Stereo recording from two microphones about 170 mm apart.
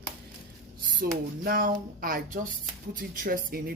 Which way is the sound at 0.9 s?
60° right (ahead or behind).